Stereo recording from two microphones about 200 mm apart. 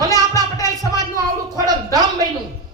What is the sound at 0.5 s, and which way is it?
Music, 15° left (ahead or behind).